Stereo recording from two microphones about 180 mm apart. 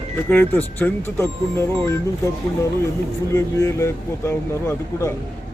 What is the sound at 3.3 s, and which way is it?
Speech, 15° left (ahead or behind).